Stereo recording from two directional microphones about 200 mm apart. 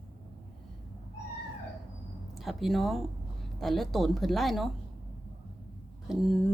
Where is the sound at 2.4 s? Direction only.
Centre (ahead or behind).